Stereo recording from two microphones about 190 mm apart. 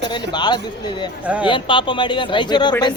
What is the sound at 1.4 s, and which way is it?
Speech, 25° left (ahead or behind).